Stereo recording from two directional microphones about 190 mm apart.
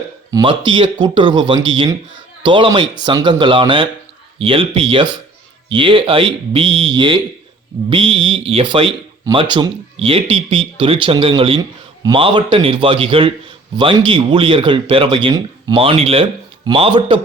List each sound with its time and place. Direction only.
0.3 s speech: 20° right (ahead or behind)